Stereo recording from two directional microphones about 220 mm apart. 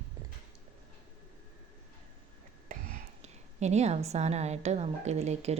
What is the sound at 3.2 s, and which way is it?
A woman's voice, 30° right (ahead or behind).